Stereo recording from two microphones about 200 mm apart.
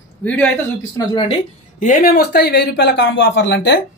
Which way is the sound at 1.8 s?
45° left (ahead or behind).